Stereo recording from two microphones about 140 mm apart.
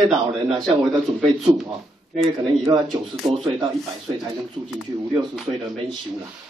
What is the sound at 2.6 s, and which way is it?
Speech, 30° right (ahead or behind).